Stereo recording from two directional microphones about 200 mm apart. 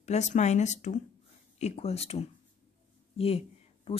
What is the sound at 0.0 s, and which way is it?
Speech, 35° left (ahead or behind).